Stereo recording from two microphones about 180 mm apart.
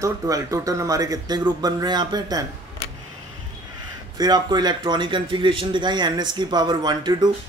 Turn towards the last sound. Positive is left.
turn(degrees=-25)  # may be behind; listen again after turning